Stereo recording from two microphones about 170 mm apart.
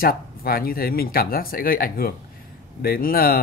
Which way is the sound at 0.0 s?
60° left (ahead or behind).